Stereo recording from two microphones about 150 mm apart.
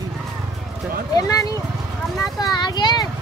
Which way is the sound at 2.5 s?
30° left (ahead or behind).